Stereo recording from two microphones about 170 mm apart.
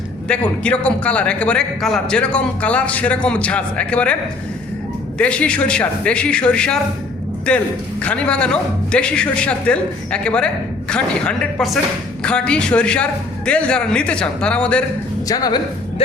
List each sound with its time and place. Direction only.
0.3 s a man's voice: 5° left (ahead or behind)
15.3 s speech: 20° left (ahead or behind)